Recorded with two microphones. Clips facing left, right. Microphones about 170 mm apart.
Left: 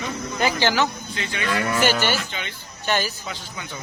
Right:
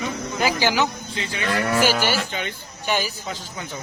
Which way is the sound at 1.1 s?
30° right (ahead or behind).